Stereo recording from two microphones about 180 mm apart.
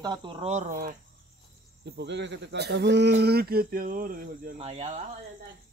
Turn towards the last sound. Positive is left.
turn(degrees=-35)  # may be behind; listen again after turning